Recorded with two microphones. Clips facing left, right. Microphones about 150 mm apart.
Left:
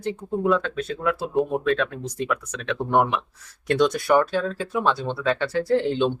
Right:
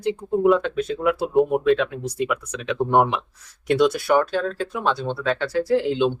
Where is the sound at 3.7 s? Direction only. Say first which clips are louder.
Right 1 dB; 5° right (ahead or behind).